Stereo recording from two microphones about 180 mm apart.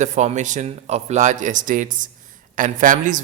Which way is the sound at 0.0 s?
40° right (ahead or behind).